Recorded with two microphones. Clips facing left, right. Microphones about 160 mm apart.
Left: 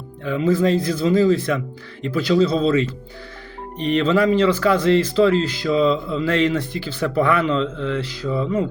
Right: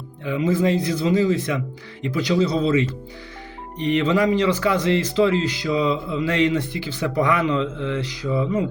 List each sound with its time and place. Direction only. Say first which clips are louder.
0.3 s speech: left 2 dB; 20° right (ahead or behind)